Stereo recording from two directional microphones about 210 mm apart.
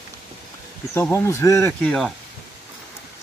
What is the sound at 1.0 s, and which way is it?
Speech, 15° left (ahead or behind).